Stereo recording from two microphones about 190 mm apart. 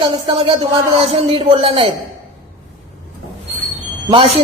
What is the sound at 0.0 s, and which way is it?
Speech, 30° right (ahead or behind).